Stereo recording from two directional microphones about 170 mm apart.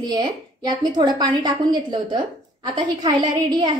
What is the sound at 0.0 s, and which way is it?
A woman's voice, 25° right (ahead or behind).